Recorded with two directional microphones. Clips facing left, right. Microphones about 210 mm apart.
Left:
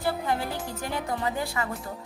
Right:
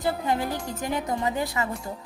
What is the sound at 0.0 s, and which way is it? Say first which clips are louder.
Speech: right 2 dB; 20° right (ahead or behind).